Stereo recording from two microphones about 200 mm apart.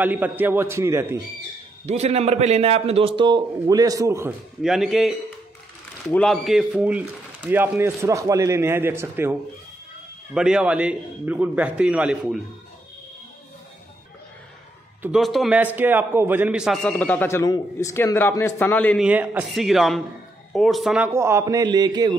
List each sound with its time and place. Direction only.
0.0 s speech: 10° right (ahead or behind)
1.9 s a man's voice: 35° right (ahead or behind); by 4.3 s 15° right (ahead or behind)
4.6 s a man's voice: centre (ahead or behind)
15.0 s a man's voice: 5° right (ahead or behind)
19.0 s a man's voice: 5° right (ahead or behind)